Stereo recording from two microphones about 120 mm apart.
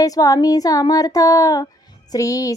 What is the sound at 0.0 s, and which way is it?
Speech, 30° left (ahead or behind).